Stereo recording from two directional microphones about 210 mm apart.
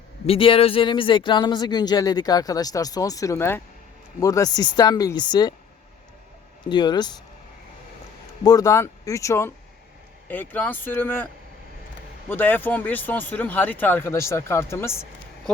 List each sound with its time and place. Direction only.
0.3 s speech: 25° left (ahead or behind)
6.7 s speech: 20° left (ahead or behind)
8.4 s speech: 15° left (ahead or behind)
12.3 s speech: 10° left (ahead or behind)